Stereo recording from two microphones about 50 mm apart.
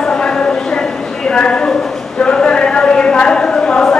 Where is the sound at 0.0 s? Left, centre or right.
Centre.